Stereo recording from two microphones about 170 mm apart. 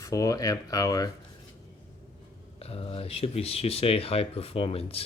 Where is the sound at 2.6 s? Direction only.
35° left (ahead or behind).